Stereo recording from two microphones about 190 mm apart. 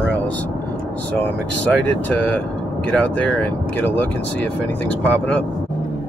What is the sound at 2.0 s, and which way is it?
Speech, 10° left (ahead or behind).